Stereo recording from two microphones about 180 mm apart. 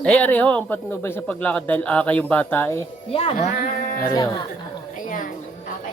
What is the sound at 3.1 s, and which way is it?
Speech, 35° left (ahead or behind).